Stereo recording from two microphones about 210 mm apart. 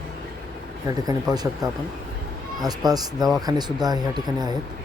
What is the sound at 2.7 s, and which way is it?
Speech, 20° right (ahead or behind).